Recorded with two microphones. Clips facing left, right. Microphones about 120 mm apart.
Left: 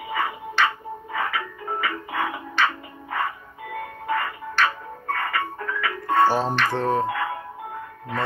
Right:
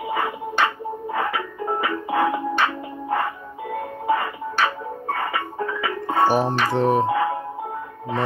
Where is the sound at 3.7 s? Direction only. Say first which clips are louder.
Right 4 dB; 45° right (ahead or behind).